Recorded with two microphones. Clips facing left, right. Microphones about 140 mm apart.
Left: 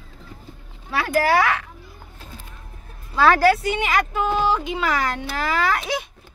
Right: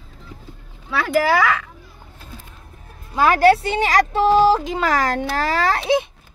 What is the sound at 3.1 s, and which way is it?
Speech, 15° right (ahead or behind).